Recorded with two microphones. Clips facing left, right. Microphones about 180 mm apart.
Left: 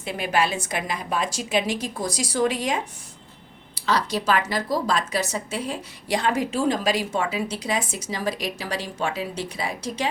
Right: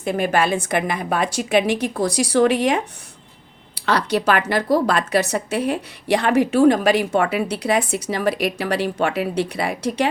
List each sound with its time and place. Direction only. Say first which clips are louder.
0.0 s a woman's voice: right 5 dB; 50° right (ahead or behind)